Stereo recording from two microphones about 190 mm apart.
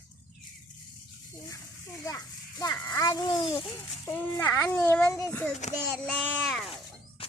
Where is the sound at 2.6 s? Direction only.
20° left (ahead or behind).